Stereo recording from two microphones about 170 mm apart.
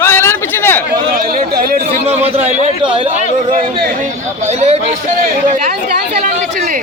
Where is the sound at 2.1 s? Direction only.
40° right (ahead or behind).